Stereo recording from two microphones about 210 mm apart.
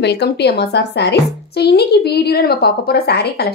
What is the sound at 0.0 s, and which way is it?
A woman's voice, 55° left (ahead or behind).